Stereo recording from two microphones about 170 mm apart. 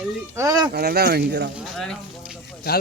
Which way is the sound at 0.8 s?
70° right (ahead or behind).